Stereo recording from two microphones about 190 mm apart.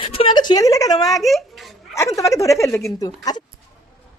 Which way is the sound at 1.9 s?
15° left (ahead or behind).